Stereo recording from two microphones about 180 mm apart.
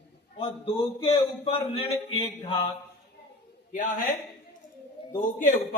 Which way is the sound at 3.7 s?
50° left (ahead or behind).